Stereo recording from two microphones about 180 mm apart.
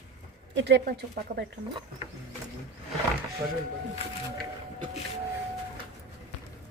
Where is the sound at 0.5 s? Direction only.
70° right (ahead or behind).